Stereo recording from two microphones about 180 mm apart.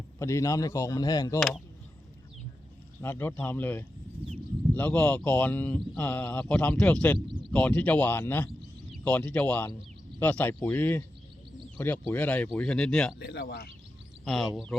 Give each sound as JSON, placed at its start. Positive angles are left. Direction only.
{"t": 0.2, "sound": "speech", "side_deg": 15}
{"t": 1.4, "sound": "speech", "side_deg": 0}
{"t": 3.0, "sound": "speech", "side_deg": 10}
{"t": 13.1, "sound": "speech", "side_deg": 65}
{"t": 14.3, "sound": "speech", "side_deg": 0}